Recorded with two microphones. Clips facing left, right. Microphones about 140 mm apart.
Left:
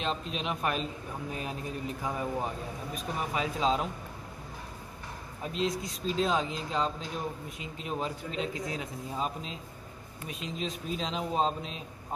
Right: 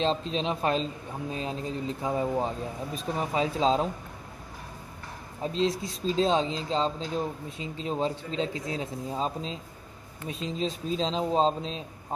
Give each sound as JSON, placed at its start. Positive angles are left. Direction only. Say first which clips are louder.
{"t": 0.0, "sound": "speech", "louder": "right 6 dB", "side_deg": -30}
{"t": 5.4, "sound": "speech", "louder": "right 4 dB", "side_deg": -30}